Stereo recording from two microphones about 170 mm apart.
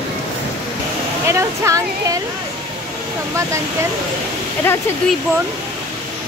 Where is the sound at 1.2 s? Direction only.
15° right (ahead or behind).